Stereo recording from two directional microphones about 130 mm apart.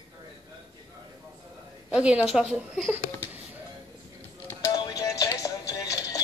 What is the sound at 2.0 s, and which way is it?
A woman's voice, 5° right (ahead or behind).